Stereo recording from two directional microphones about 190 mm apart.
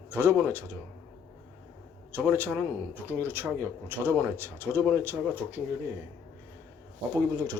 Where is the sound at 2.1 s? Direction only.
10° right (ahead or behind).